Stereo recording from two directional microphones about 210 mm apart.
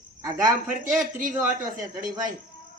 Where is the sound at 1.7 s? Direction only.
40° right (ahead or behind).